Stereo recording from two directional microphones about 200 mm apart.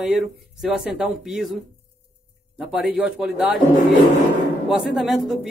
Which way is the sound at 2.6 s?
5° right (ahead or behind).